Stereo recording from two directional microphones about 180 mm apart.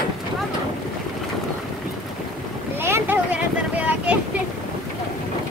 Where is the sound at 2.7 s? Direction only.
15° right (ahead or behind).